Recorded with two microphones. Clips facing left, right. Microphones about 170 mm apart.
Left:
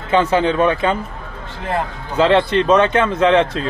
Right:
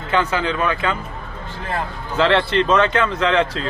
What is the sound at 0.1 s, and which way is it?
Speech, 25° left (ahead or behind).